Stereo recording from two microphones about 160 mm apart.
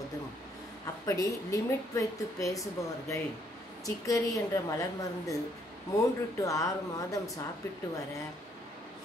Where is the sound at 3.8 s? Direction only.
20° left (ahead or behind).